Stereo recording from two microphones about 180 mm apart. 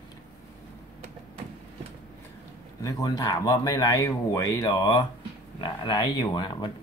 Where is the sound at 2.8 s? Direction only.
20° left (ahead or behind).